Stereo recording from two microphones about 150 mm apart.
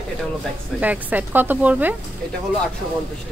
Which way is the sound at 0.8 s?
10° right (ahead or behind).